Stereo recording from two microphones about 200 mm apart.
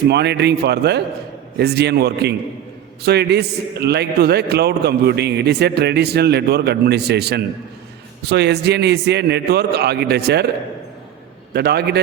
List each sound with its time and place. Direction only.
0.1 s a man's voice: 55° right (ahead or behind)
11.5 s a man's voice: 55° right (ahead or behind)